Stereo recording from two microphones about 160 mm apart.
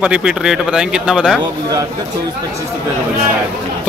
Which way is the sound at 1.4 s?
20° right (ahead or behind).